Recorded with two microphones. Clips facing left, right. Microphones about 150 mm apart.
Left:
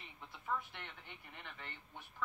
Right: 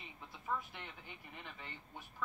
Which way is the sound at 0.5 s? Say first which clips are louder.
Even; 5° right (ahead or behind).